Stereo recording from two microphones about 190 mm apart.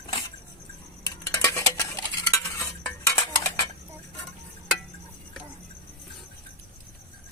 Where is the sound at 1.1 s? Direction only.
15° left (ahead or behind).